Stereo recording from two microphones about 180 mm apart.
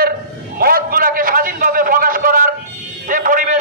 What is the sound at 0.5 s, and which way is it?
A man's voice, 55° right (ahead or behind).